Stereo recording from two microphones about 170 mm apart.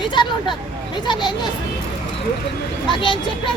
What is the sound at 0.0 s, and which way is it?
Speech, 30° left (ahead or behind).